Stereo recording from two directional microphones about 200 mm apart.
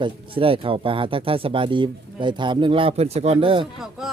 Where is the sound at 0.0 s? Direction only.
25° right (ahead or behind).